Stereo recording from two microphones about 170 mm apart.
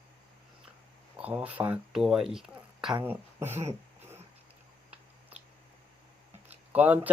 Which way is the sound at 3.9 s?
15° right (ahead or behind).